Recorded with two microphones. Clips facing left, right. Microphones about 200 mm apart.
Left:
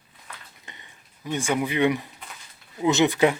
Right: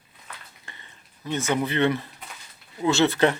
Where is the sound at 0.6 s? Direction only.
15° left (ahead or behind).